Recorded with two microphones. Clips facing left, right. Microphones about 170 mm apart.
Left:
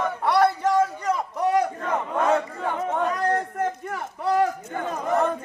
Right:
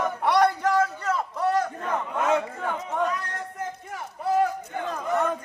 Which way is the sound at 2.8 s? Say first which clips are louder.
Left 6 dB; 50° left (ahead or behind).